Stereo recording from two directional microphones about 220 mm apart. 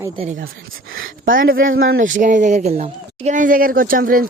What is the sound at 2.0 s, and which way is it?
Speech, 35° right (ahead or behind).